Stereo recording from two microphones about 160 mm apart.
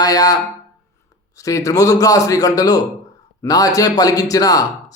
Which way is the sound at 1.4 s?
20° left (ahead or behind).